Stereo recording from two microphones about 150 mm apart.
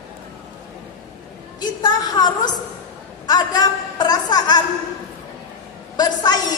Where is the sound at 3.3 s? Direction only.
25° left (ahead or behind).